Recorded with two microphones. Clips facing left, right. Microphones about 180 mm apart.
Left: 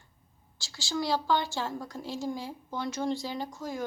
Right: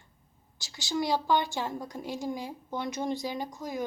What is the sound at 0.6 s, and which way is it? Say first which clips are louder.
A woman's voice: right 2 dB; 20° right (ahead or behind).